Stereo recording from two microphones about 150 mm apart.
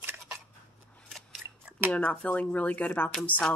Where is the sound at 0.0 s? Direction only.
10° right (ahead or behind).